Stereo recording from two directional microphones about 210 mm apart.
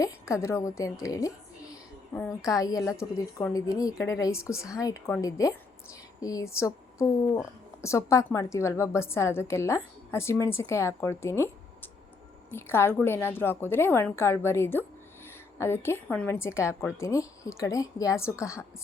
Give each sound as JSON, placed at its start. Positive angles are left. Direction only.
{"t": 0.0, "sound": "a woman's voice", "side_deg": 15}